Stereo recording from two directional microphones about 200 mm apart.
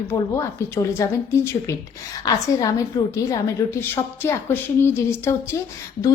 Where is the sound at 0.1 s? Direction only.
15° left (ahead or behind).